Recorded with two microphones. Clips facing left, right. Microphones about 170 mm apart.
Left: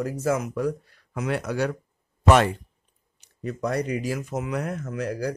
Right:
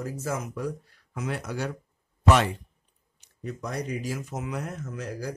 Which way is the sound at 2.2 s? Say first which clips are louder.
Left 4 dB; 55° left (ahead or behind).